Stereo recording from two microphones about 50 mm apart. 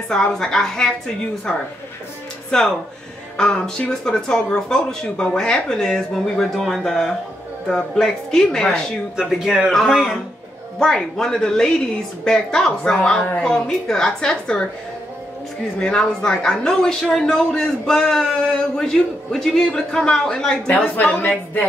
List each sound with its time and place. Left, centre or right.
0.1 s a man's voice: centre
9.4 s a man's voice: centre
9.7 s a man's voice: centre
15.8 s a man's voice: centre
20.7 s a woman's voice: left